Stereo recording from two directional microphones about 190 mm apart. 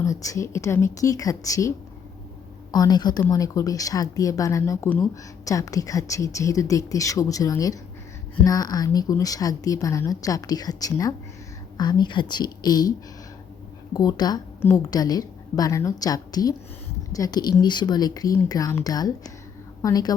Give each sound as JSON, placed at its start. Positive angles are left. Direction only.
{"t": 0.0, "sound": "speech", "side_deg": 15}
{"t": 2.7, "sound": "a woman's voice", "side_deg": 20}
{"t": 13.9, "sound": "a woman's voice", "side_deg": 20}